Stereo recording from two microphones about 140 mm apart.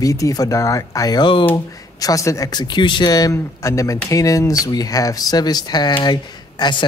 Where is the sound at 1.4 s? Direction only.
20° left (ahead or behind).